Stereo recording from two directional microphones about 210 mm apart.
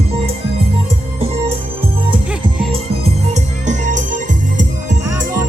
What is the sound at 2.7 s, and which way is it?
Music, 30° right (ahead or behind).